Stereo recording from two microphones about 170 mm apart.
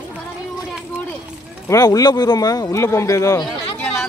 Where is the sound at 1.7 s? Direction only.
20° left (ahead or behind).